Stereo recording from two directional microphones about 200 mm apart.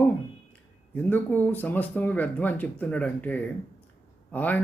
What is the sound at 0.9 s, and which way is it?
Speech, 10° left (ahead or behind).